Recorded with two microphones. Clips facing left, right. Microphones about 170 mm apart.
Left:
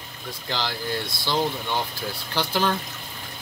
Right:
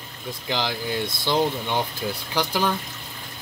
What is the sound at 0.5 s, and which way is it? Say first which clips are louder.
Speech: right 2 dB; 15° right (ahead or behind).